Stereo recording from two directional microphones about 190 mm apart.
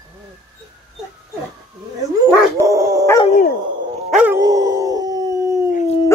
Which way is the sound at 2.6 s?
15° right (ahead or behind).